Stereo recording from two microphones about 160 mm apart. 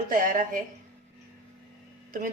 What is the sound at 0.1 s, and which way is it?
Speech, 60° right (ahead or behind).